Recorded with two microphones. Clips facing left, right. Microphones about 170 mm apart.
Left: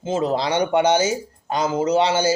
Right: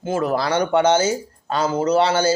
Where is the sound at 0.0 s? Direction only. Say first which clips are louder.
Even; 20° left (ahead or behind).